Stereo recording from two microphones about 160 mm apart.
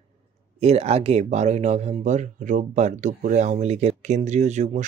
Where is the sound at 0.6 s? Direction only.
40° right (ahead or behind).